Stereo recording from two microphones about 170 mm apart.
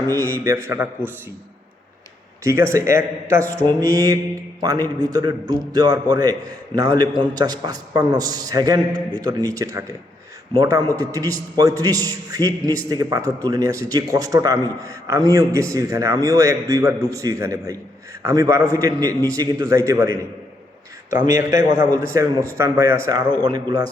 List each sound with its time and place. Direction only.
0.1 s a man's voice: 20° right (ahead or behind)
2.4 s a man's voice: 15° right (ahead or behind)
21.9 s a man's voice: 20° right (ahead or behind)